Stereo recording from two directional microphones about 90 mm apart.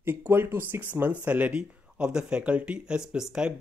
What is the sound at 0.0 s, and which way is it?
Speech, 25° right (ahead or behind).